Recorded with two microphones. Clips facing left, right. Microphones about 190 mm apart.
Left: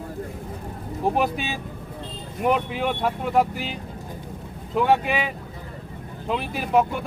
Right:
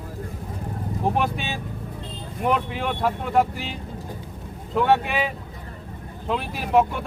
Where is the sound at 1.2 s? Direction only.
5° left (ahead or behind).